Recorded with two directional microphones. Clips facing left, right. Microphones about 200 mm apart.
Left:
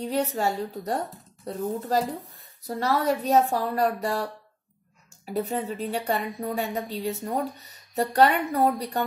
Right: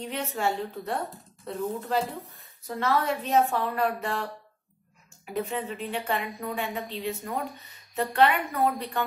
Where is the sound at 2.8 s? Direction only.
40° left (ahead or behind).